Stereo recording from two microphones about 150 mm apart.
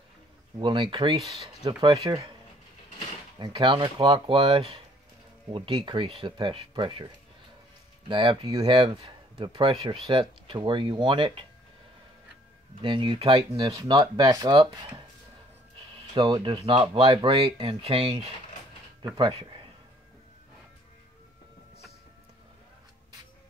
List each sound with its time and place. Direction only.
0.6 s speech: 30° right (ahead or behind)
1.2 s speech: centre (ahead or behind)
1.6 s speech: 30° right (ahead or behind)
3.3 s speech: 30° right (ahead or behind)
8.1 s speech: 35° right (ahead or behind)
12.8 s speech: 35° right (ahead or behind)
13.6 s speech: 25° right (ahead or behind)
16.2 s speech: 30° right (ahead or behind)